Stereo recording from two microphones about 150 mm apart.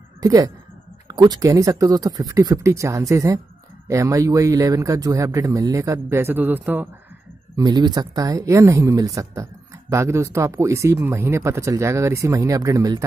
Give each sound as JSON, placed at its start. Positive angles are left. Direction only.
{"t": 0.2, "sound": "speech", "side_deg": -25}
{"t": 7.5, "sound": "speech", "side_deg": -25}